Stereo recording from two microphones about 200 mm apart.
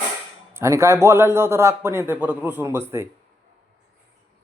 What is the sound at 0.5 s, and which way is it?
A man's voice, 15° right (ahead or behind).